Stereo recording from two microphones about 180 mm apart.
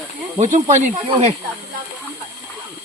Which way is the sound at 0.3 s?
40° right (ahead or behind).